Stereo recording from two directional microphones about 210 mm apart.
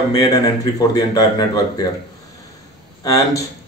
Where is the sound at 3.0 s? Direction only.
15° left (ahead or behind).